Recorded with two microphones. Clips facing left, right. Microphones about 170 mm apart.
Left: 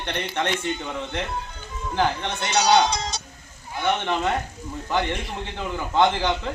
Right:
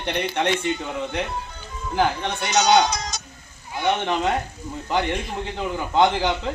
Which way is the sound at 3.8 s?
15° right (ahead or behind).